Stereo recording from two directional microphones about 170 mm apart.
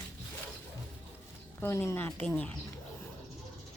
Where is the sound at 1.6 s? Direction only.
15° left (ahead or behind).